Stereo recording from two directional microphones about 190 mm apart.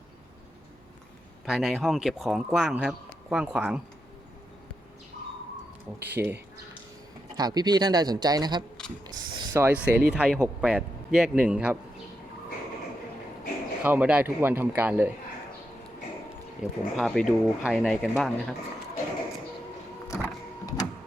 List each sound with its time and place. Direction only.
1.5 s speech: 5° right (ahead or behind)
6.0 s a man's voice: 10° right (ahead or behind)
7.3 s speech: 20° right (ahead or behind); by 11.8 s 5° right (ahead or behind)
13.8 s a man's voice: 10° right (ahead or behind)
16.6 s speech: centre (ahead or behind)
20.1 s power windows: 15° left (ahead or behind)